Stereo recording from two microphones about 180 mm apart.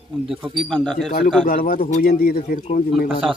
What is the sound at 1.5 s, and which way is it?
A man's voice, 50° left (ahead or behind).